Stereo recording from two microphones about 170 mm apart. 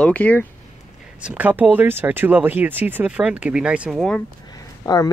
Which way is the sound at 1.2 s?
5° right (ahead or behind).